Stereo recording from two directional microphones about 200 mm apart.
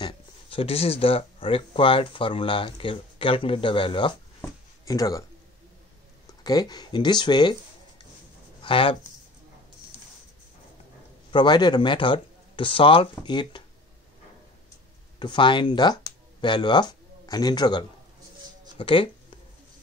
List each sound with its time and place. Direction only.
0.0 s speech: 25° left (ahead or behind)
4.4 s a sound: 15° left (ahead or behind)
6.2 s speech: 20° left (ahead or behind)
8.6 s speech: 25° left (ahead or behind)
11.3 s speech: 20° left (ahead or behind)
15.1 s speech: 25° left (ahead or behind)